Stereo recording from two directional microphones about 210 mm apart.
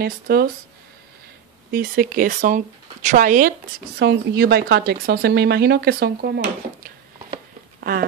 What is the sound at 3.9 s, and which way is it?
Speech, 50° right (ahead or behind).